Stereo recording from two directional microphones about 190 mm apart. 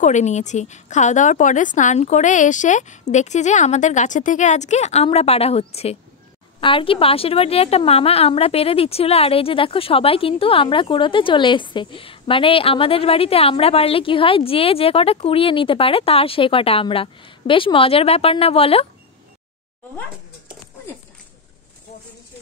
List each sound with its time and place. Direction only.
0.0 s a woman's voice: 40° left (ahead or behind)